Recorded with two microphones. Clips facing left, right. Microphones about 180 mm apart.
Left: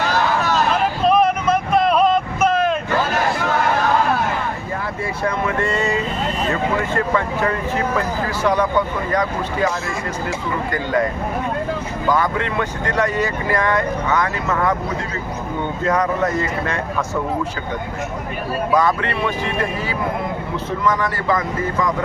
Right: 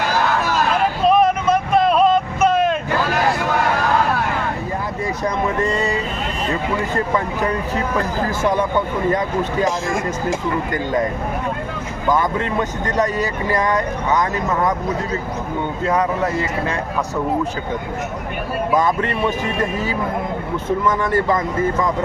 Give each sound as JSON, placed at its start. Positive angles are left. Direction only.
{"t": 1.0, "sound": "vehicle", "side_deg": 0}
{"t": 5.6, "sound": "speech", "side_deg": -35}
{"t": 12.0, "sound": "speech", "side_deg": -20}
{"t": 12.5, "sound": "speech", "side_deg": -40}
{"t": 13.5, "sound": "speech", "side_deg": -15}
{"t": 15.9, "sound": "speech", "side_deg": -10}
{"t": 21.0, "sound": "speech", "side_deg": -25}